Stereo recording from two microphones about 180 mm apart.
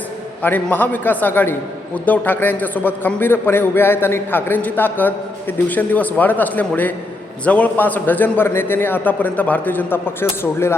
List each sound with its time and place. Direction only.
0.4 s a man's voice: 10° left (ahead or behind)